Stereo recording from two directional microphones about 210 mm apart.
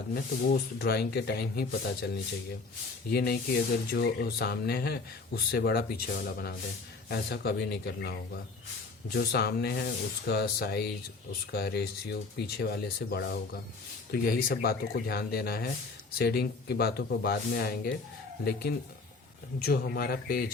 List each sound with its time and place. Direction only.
0.1 s speech: 50° left (ahead or behind)
3.1 s speech: 50° left (ahead or behind)
19.5 s speech: 45° left (ahead or behind)